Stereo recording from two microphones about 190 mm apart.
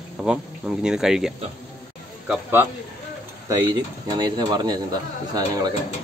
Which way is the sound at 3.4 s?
20° right (ahead or behind).